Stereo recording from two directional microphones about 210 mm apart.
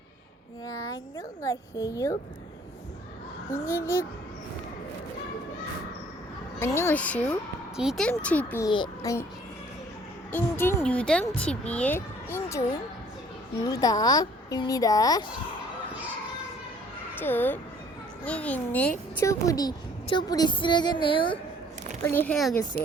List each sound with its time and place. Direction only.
0.6 s speech: 15° left (ahead or behind)
3.5 s speech: 10° left (ahead or behind)
6.6 s speech: 10° left (ahead or behind)
10.3 s speech: 10° left (ahead or behind)
13.7 s speech: 15° left (ahead or behind)
17.2 s speech: 10° left (ahead or behind)
22.0 s speech: 10° left (ahead or behind)